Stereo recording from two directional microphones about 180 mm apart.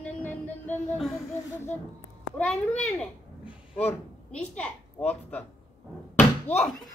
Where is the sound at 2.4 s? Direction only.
5° left (ahead or behind).